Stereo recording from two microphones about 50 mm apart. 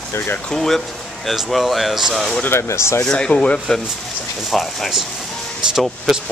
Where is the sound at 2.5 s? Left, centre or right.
Left.